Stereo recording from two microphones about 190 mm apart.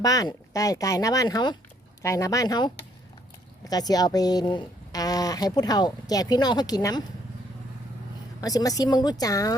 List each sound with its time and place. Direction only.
0.0 s speech: 20° left (ahead or behind)
8.4 s speech: 20° left (ahead or behind)